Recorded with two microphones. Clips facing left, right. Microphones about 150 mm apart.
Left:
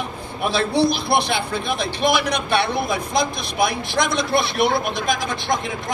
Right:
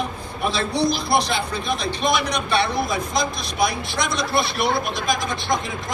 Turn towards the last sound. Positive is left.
turn(degrees=55)  # may be behind; listen again after turning